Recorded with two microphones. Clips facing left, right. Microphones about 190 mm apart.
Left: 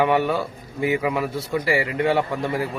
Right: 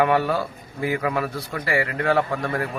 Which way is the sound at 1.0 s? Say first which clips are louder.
Left 1 dB; 5° left (ahead or behind).